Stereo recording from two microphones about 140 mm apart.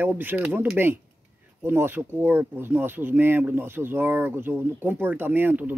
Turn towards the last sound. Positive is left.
turn(degrees=-15)  # may be behind; listen again after turning